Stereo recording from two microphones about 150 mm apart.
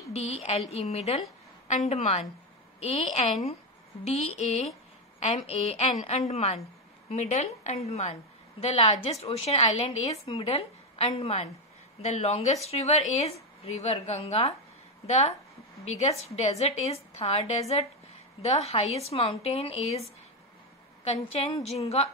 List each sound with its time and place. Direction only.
0.1 s a woman's voice: 45° left (ahead or behind)